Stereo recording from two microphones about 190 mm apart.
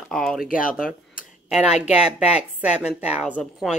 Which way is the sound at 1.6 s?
35° left (ahead or behind).